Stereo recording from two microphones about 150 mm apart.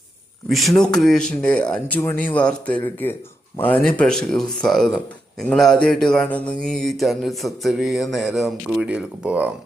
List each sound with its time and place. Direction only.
0.8 s speech: 5° left (ahead or behind)